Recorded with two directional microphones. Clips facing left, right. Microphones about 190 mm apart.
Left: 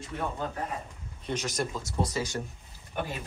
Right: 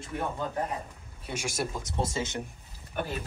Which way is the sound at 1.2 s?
10° right (ahead or behind).